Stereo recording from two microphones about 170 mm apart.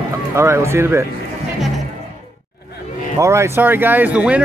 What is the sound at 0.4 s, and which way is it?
Speech, 15° right (ahead or behind).